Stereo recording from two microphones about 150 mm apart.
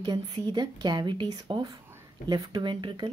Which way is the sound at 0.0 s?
30° right (ahead or behind).